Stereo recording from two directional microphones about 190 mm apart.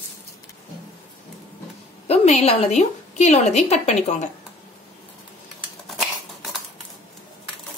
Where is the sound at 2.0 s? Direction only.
35° left (ahead or behind).